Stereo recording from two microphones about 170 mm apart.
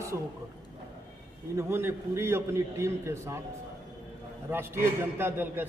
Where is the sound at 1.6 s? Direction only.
15° right (ahead or behind).